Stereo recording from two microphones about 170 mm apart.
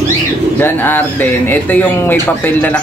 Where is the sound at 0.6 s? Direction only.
10° left (ahead or behind).